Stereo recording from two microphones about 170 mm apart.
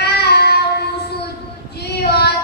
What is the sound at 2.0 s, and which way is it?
Female singing, 75° left (ahead or behind).